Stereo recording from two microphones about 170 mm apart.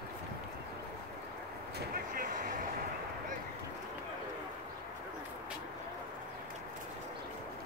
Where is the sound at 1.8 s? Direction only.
55° right (ahead or behind).